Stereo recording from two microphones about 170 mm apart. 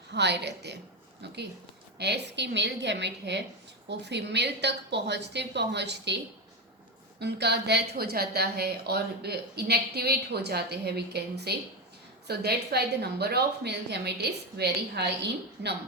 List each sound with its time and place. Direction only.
0.1 s a woman's voice: 85° right
2.0 s a woman's voice: 80° right
7.2 s a woman's voice: 80° right